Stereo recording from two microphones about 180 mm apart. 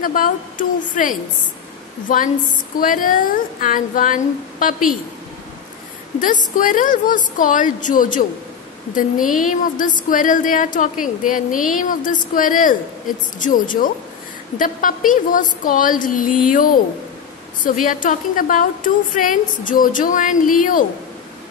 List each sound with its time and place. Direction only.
0.0 s a woman's voice: 50° left (ahead or behind)
6.2 s a woman's voice: 45° left (ahead or behind)
9.3 s a woman's voice: 45° left (ahead or behind)
17.8 s a woman's voice: 50° left (ahead or behind)